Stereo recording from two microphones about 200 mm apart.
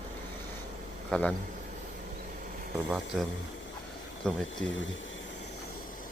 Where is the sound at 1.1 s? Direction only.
5° left (ahead or behind).